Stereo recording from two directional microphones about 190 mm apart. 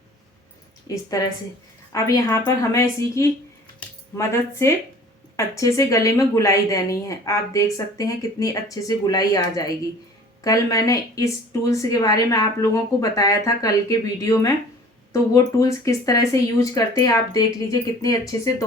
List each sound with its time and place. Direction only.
0.9 s a woman's voice: 20° left (ahead or behind)
3.8 s a sound: 15° left (ahead or behind)
5.4 s a woman's voice: 15° left (ahead or behind)